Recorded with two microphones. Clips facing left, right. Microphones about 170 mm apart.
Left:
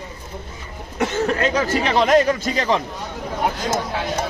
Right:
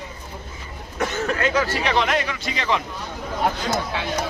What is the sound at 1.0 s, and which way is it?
A man's voice, 35° left (ahead or behind).